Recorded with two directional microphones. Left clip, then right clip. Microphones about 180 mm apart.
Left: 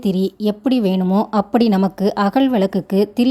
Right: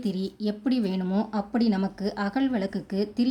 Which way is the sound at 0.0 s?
40° left (ahead or behind).